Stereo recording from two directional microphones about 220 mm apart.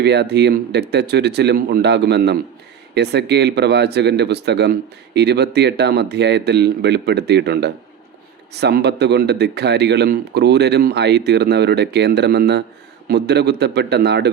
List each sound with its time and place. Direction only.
0.0 s speech: 50° right (ahead or behind)